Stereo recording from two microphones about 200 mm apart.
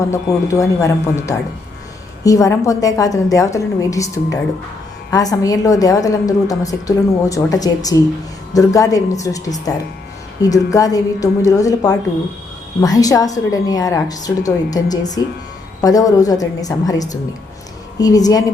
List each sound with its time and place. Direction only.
0.1 s a woman's voice: 15° left (ahead or behind)